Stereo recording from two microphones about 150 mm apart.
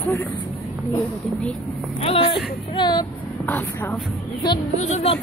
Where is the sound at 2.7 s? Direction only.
30° left (ahead or behind).